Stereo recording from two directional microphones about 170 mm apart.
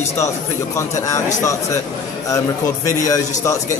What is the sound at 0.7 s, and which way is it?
Speech, 15° left (ahead or behind).